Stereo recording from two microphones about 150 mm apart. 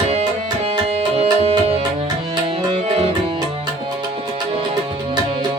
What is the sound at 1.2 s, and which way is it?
Music, 45° right (ahead or behind).